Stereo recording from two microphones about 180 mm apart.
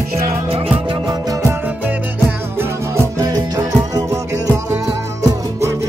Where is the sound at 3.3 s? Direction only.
20° right (ahead or behind).